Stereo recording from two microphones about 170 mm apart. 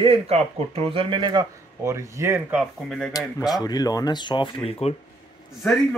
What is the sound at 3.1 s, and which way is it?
Speech, 20° left (ahead or behind).